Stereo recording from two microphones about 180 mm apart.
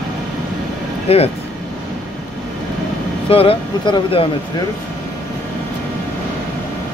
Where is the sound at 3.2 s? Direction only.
30° left (ahead or behind).